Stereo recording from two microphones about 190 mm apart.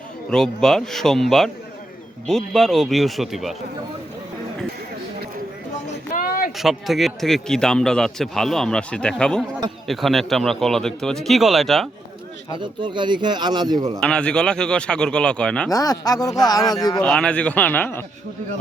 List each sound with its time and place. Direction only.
0.3 s a man's voice: 5° left (ahead or behind)
6.1 s a sound: 50° left (ahead or behind)
6.6 s a man's voice: centre (ahead or behind)
12.5 s speech: 25° right (ahead or behind)
14.0 s a man's voice: 5° left (ahead or behind)
15.7 s speech: 20° left (ahead or behind)
17.0 s speech: 5° left (ahead or behind)